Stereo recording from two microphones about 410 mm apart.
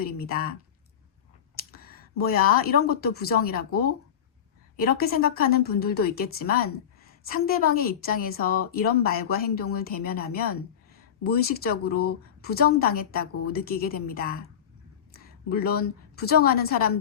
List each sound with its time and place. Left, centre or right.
0.0 s speech: left
1.7 s a sound: left
2.8 s a woman's voice: left